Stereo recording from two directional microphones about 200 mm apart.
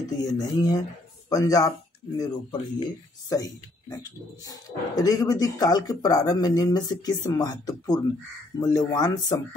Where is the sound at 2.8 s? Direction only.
20° left (ahead or behind).